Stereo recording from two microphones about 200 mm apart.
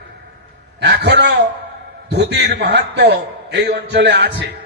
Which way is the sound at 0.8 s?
55° right (ahead or behind).